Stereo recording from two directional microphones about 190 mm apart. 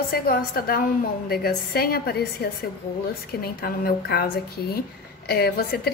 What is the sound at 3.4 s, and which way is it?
A woman's voice, 50° left (ahead or behind).